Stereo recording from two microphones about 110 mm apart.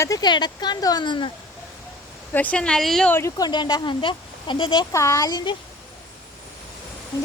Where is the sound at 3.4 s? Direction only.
40° left (ahead or behind).